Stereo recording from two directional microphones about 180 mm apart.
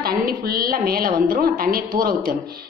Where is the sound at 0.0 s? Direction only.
55° right (ahead or behind).